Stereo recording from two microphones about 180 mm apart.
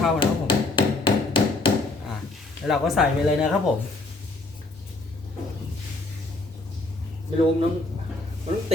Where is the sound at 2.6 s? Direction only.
Centre (ahead or behind).